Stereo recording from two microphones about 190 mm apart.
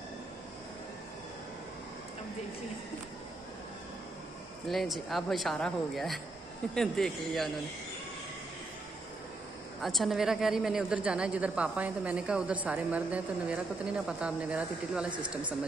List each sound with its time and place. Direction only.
4.6 s speech: centre (ahead or behind)
9.8 s speech: centre (ahead or behind)